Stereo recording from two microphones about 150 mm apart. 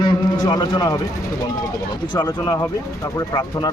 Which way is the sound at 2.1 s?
25° left (ahead or behind).